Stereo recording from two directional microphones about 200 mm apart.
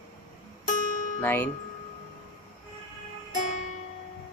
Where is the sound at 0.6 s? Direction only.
40° left (ahead or behind).